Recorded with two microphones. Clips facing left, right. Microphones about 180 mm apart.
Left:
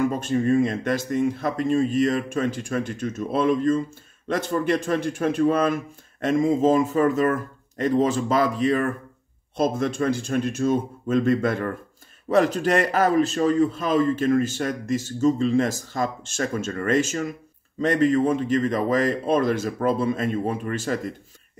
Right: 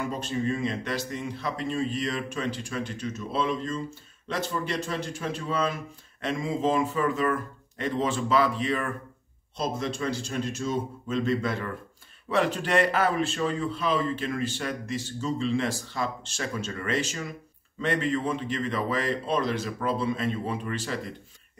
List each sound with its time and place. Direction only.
0.0 s a man's voice: 50° left (ahead or behind)